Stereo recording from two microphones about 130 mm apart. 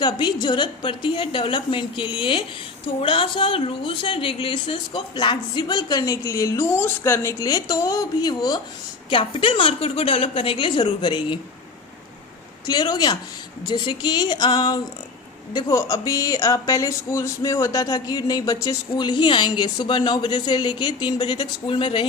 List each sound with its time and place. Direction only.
0.0 s a woman's voice: 35° left (ahead or behind)
12.6 s speech: 30° left (ahead or behind)